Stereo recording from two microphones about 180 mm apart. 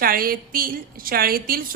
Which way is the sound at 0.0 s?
55° right (ahead or behind).